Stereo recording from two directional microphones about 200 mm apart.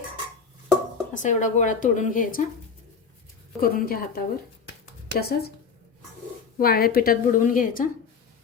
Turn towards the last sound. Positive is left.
turn(degrees=40)  # may be behind; listen again after turning